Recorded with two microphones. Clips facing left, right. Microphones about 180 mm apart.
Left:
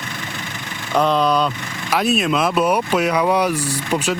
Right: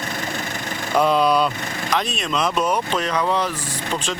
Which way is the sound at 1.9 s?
5° left (ahead or behind).